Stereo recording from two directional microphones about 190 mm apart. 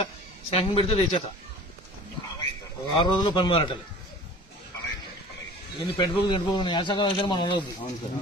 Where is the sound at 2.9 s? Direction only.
25° left (ahead or behind).